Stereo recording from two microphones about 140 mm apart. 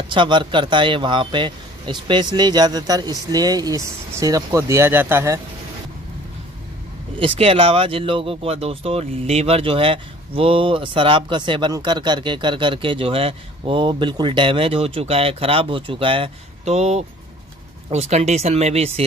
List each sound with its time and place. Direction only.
0.1 s speech: 35° right (ahead or behind); by 5.4 s 20° right (ahead or behind)
7.2 s speech: 40° right (ahead or behind)